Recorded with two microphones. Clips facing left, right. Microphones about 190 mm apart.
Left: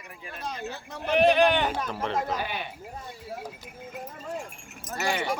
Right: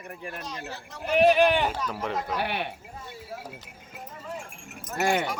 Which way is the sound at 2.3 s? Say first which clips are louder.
Right 3 dB; 65° right (ahead or behind).